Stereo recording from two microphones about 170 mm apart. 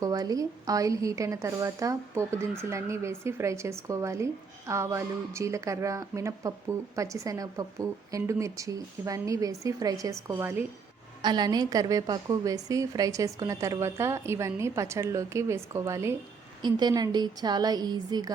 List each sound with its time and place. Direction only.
0.0 s a woman's voice: 20° right (ahead or behind)
11.2 s a woman's voice: 25° right (ahead or behind)